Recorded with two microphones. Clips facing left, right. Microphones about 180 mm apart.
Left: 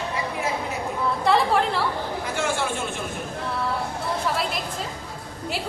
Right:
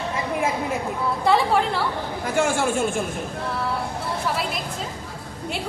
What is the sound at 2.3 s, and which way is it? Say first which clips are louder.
Speech: right 6 dB; 50° right (ahead or behind).